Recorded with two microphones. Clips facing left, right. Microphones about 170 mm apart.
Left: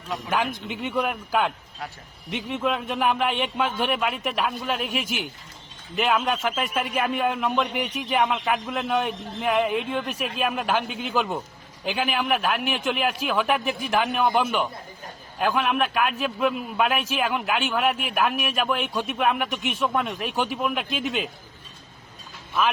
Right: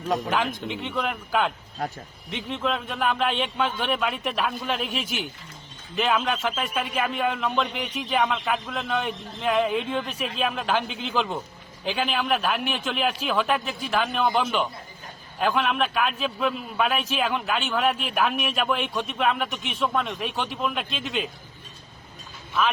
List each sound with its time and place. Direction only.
0.7 s a man's voice: 5° left (ahead or behind)
5.0 s speech: 50° left (ahead or behind)
6.1 s a man's voice: centre (ahead or behind)